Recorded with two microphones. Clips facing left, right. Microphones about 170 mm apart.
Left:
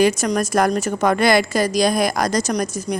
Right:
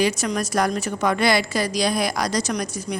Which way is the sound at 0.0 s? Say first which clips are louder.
Left 5 dB; 50° left (ahead or behind).